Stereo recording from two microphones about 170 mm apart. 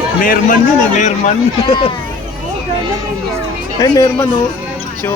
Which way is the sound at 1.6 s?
30° left (ahead or behind).